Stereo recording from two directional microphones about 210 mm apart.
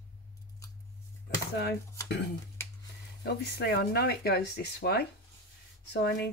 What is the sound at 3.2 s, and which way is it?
Speech, 50° left (ahead or behind).